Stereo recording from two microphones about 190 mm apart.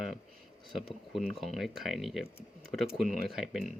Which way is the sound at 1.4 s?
Centre (ahead or behind).